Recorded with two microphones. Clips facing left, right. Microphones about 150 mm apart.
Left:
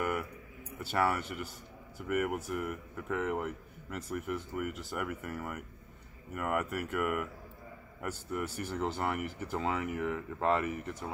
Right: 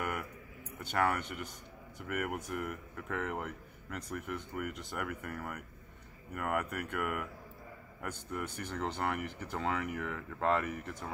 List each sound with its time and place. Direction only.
0.8 s speech: 5° left (ahead or behind)